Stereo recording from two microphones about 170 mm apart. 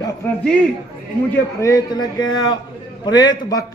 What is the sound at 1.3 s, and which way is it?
A man's voice, 20° left (ahead or behind).